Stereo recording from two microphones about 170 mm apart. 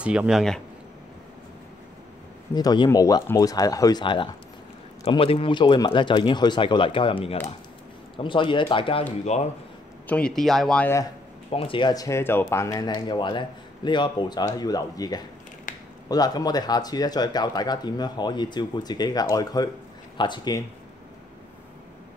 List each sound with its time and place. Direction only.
0.0 s speech: 5° right (ahead or behind)
2.5 s speech: 25° left (ahead or behind); by 9.5 s 40° left (ahead or behind)
10.0 s speech: 5° left (ahead or behind)
11.5 s speech: 30° left (ahead or behind)
15.7 s a sound: 50° left (ahead or behind)
16.1 s speech: 20° left (ahead or behind)